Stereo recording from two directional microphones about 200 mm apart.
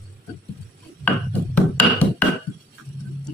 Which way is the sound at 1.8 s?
10° left (ahead or behind).